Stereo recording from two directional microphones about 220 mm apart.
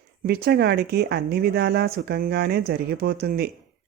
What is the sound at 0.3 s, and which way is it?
Speech, 45° right (ahead or behind).